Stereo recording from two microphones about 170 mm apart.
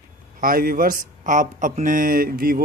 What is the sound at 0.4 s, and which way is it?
A man's voice, 60° right (ahead or behind).